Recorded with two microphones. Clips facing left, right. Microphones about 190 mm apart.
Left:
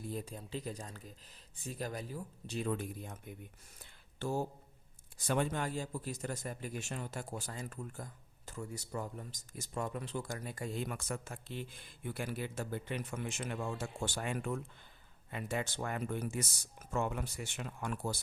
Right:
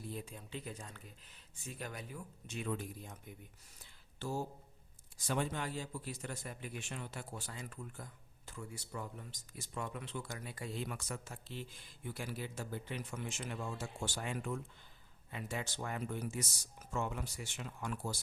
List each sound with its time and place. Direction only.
0.1 s speech: 40° left (ahead or behind)
2.7 s speech: 55° left (ahead or behind)
3.8 s a sound: 55° left (ahead or behind)
5.1 s speech: 55° left (ahead or behind)